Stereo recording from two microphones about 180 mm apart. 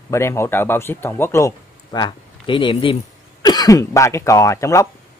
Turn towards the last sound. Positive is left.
turn(degrees=15)  # may be behind; listen again after turning